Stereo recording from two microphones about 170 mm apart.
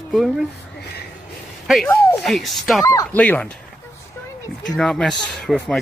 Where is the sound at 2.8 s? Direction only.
20° left (ahead or behind).